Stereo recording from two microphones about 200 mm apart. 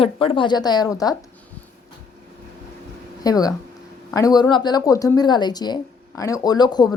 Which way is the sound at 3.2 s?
20° left (ahead or behind).